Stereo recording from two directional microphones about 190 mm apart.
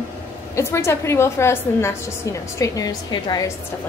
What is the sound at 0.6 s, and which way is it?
A woman's voice, 15° left (ahead or behind).